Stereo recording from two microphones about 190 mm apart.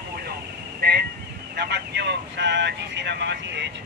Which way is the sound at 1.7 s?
65° right (ahead or behind).